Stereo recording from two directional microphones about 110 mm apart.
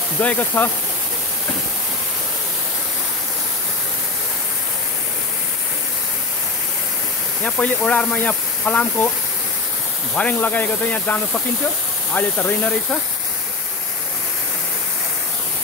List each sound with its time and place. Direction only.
0.2 s speech: 15° left (ahead or behind)
7.4 s speech: 15° left (ahead or behind)
10.1 s speech: 15° left (ahead or behind)